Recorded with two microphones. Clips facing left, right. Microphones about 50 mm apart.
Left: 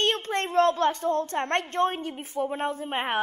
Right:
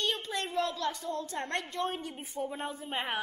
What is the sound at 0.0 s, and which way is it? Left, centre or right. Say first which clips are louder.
A woman's voice: left 7 dB; left.